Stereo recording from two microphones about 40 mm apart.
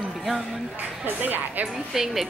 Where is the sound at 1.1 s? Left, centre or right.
Right.